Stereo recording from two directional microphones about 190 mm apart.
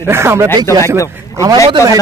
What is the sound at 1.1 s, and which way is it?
Speech, 15° right (ahead or behind).